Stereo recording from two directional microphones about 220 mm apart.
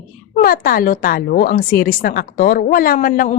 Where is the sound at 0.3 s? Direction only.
40° left (ahead or behind).